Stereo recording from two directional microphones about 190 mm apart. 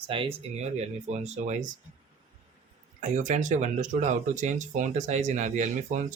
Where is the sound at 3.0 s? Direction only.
40° right (ahead or behind).